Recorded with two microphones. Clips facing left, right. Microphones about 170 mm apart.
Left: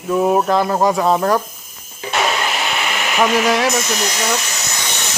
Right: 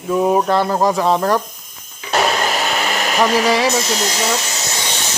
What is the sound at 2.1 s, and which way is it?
Vacuum cleaner, 40° right (ahead or behind).